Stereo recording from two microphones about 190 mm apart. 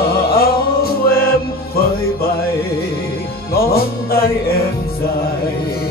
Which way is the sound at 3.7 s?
55° left (ahead or behind).